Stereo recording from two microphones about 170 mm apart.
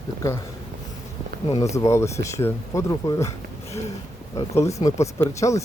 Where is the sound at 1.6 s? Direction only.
15° left (ahead or behind).